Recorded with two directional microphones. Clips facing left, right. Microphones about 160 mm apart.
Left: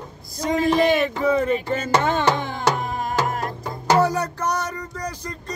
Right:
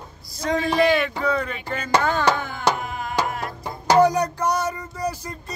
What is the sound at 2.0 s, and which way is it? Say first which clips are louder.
Music: left 1 dB; 25° left (ahead or behind).